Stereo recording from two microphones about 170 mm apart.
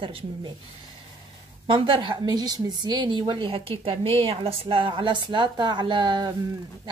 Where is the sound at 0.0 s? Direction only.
30° right (ahead or behind).